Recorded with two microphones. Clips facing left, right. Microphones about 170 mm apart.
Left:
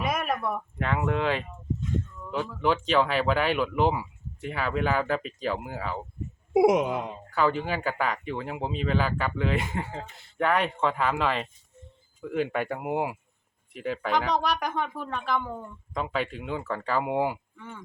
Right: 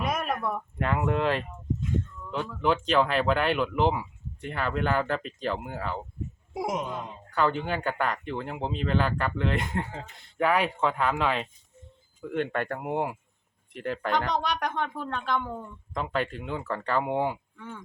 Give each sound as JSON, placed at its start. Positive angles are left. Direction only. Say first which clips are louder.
{"t": 0.0, "sound": "speech", "louder": "left 1 dB", "side_deg": 0}
{"t": 6.5, "sound": "speech", "louder": "left 10 dB", "side_deg": 70}
{"t": 7.3, "sound": "speech", "louder": "even", "side_deg": 0}